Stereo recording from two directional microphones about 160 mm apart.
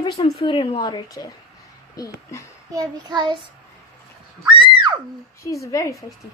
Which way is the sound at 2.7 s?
30° right (ahead or behind).